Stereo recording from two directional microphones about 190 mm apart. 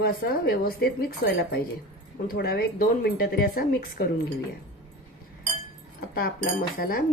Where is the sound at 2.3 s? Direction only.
55° left (ahead or behind).